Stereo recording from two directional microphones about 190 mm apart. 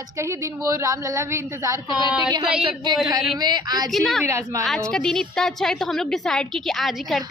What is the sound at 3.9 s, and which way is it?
Speech, centre (ahead or behind).